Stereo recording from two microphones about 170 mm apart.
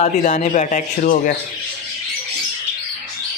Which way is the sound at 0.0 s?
45° left (ahead or behind).